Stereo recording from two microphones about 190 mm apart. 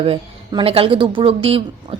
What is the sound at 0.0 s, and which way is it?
Speech, 30° right (ahead or behind).